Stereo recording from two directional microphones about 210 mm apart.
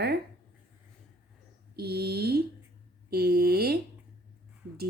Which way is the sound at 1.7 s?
50° right (ahead or behind).